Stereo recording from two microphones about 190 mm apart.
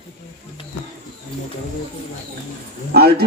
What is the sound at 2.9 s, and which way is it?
Speech, 55° right (ahead or behind).